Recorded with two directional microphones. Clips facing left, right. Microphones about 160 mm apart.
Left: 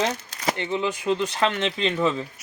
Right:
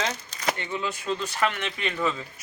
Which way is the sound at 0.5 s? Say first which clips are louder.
Left 5 dB; 20° left (ahead or behind).